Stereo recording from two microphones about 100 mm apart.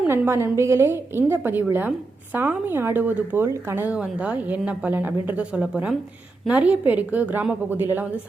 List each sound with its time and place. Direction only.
0.1 s a woman's voice: 25° right (ahead or behind)
3.8 s a woman's voice: 10° right (ahead or behind)